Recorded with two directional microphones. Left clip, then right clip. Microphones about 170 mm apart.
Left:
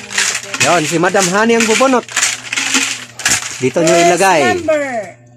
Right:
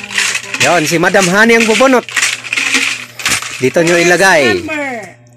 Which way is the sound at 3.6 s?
Centre (ahead or behind).